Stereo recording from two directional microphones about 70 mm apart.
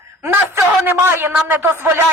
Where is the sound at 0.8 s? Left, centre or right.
Right.